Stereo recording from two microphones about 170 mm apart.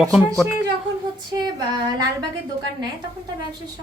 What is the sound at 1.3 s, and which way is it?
Female singing, 25° right (ahead or behind).